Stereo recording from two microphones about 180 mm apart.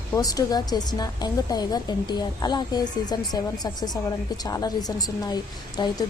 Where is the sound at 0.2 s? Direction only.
20° left (ahead or behind).